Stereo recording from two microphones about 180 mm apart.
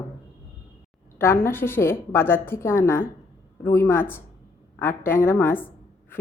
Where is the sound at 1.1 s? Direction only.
15° left (ahead or behind).